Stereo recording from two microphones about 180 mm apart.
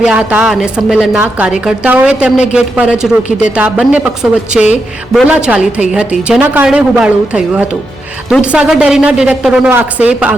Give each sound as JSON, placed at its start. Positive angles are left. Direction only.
{"t": 0.0, "sound": "a woman's voice", "side_deg": -5}